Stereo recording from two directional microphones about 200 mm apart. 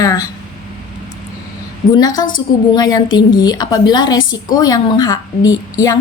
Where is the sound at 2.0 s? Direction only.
20° left (ahead or behind).